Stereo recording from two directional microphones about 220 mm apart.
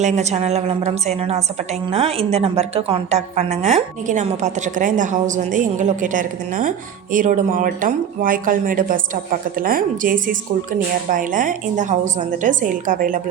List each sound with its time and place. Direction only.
0.0 s a woman's voice: 30° right (ahead or behind)